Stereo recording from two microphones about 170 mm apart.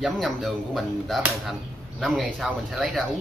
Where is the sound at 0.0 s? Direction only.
Centre (ahead or behind).